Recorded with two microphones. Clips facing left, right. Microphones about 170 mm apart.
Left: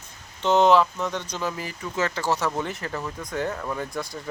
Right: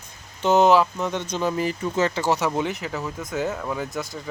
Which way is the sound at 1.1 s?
20° right (ahead or behind).